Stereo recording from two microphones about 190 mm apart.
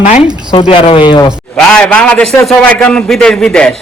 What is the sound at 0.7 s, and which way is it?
Speech, 30° left (ahead or behind).